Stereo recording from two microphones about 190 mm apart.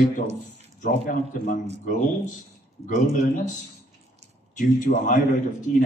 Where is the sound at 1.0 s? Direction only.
45° left (ahead or behind).